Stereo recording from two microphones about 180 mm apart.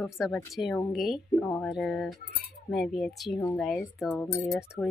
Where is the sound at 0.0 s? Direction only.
Centre (ahead or behind).